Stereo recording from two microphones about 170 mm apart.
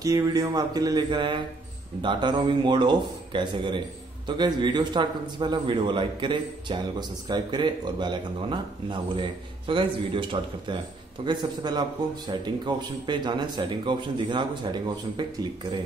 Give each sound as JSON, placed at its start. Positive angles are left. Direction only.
{"t": 0.0, "sound": "a man's voice", "side_deg": -20}